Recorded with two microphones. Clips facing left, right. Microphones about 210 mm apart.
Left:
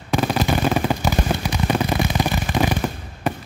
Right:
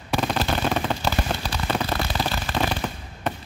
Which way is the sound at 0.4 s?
10° left (ahead or behind).